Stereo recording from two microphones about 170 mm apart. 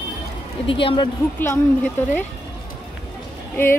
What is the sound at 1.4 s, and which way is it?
Speech, 15° left (ahead or behind).